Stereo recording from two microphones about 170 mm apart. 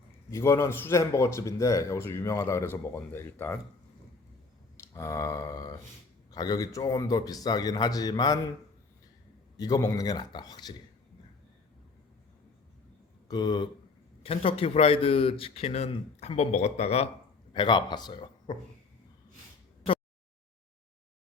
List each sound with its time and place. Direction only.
0.3 s speech: 15° left (ahead or behind)
4.8 s a man's voice: 15° left (ahead or behind)
9.6 s a man's voice: 20° left (ahead or behind)
13.2 s speech: 25° left (ahead or behind)
17.5 s a man's voice: 30° left (ahead or behind)